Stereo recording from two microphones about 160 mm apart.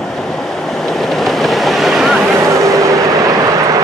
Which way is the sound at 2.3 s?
20° right (ahead or behind).